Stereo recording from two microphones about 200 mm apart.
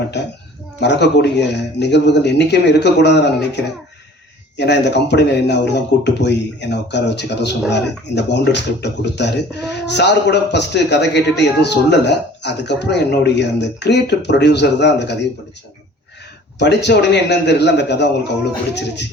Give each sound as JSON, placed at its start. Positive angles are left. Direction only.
{"t": 0.1, "sound": "speech", "side_deg": 60}
{"t": 16.6, "sound": "speech", "side_deg": 60}